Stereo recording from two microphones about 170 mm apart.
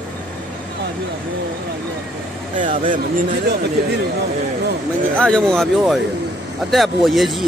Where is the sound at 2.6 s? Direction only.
50° right (ahead or behind).